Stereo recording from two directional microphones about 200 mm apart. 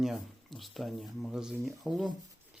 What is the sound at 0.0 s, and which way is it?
Speech, centre (ahead or behind).